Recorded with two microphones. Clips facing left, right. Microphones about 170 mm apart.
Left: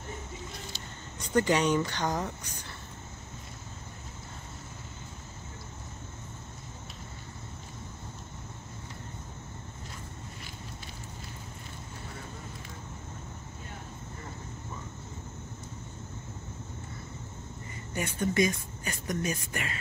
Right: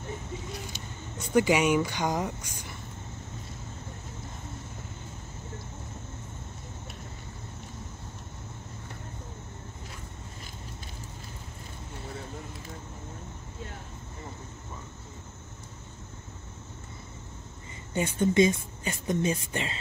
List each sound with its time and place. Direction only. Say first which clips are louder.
1.2 s speech: right 2 dB; 10° right (ahead or behind)
17.9 s speech: right 5 dB; 25° right (ahead or behind)